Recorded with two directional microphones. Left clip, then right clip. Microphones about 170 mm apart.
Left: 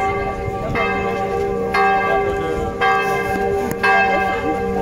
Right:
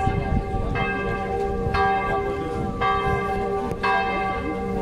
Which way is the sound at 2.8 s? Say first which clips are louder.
Left 5 dB; 20° left (ahead or behind).